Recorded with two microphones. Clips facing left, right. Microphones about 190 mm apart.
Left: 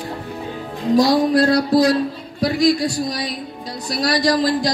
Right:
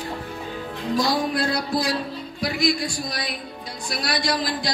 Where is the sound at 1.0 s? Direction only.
35° left (ahead or behind).